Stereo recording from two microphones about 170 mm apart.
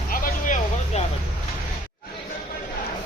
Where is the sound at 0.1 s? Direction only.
50° left (ahead or behind).